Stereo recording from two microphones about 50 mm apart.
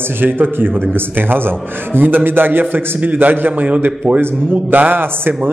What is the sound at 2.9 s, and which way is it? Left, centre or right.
A man's voice, right.